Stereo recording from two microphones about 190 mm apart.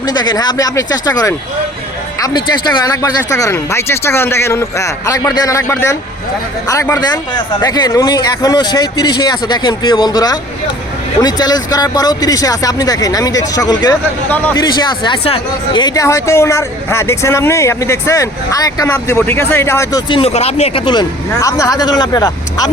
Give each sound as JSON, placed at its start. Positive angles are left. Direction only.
{"t": 0.0, "sound": "speech", "side_deg": 20}
{"t": 14.3, "sound": "speech", "side_deg": 10}
{"t": 15.0, "sound": "speech", "side_deg": 25}